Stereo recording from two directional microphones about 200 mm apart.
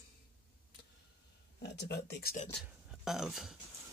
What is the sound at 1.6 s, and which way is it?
Speech, 55° left (ahead or behind).